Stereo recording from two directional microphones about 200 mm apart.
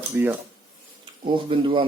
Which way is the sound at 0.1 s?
10° right (ahead or behind).